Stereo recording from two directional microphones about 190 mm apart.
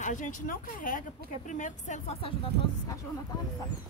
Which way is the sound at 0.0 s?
40° left (ahead or behind).